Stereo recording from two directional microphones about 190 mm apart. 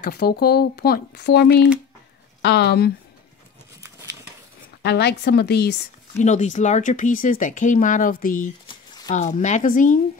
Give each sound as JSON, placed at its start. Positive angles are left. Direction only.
{"t": 0.0, "sound": "speech", "side_deg": 55}
{"t": 4.8, "sound": "speech", "side_deg": 60}
{"t": 6.1, "sound": "speech", "side_deg": 40}
{"t": 8.6, "sound": "a sound", "side_deg": 20}
{"t": 9.1, "sound": "speech", "side_deg": 40}